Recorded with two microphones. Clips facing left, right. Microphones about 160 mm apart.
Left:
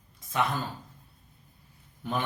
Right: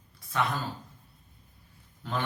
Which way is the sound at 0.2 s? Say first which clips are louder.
Left 1 dB; 20° left (ahead or behind).